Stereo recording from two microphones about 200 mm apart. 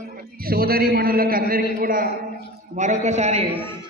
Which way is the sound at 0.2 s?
50° right (ahead or behind).